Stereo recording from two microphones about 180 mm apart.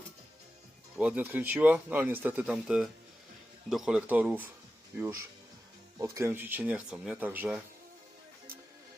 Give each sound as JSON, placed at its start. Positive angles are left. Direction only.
{"t": 0.9, "sound": "speech", "side_deg": -10}
{"t": 6.0, "sound": "speech", "side_deg": -15}